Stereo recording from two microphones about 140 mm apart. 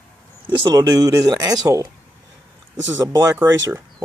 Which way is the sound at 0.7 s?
30° right (ahead or behind).